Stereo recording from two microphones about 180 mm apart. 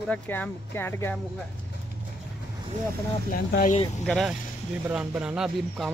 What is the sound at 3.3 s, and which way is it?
Speech, 50° left (ahead or behind).